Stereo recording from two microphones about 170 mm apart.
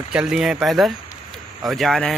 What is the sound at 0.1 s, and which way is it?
Speech, 5° right (ahead or behind).